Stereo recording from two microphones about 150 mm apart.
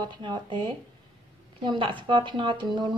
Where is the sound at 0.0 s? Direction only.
30° right (ahead or behind).